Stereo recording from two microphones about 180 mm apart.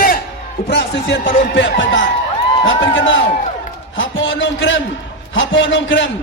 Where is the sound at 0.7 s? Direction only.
75° left (ahead or behind).